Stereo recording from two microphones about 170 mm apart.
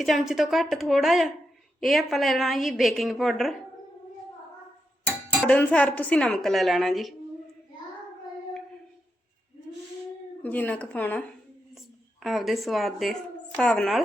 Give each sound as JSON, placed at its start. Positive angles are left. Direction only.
{"t": 0.0, "sound": "a woman's voice", "side_deg": 0}
{"t": 5.5, "sound": "a woman's voice", "side_deg": 5}
{"t": 10.4, "sound": "a woman's voice", "side_deg": 10}